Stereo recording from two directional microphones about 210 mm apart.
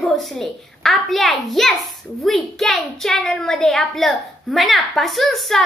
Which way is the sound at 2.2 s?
Centre (ahead or behind).